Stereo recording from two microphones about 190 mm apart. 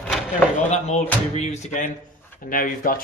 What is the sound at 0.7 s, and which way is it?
Speech, 35° left (ahead or behind).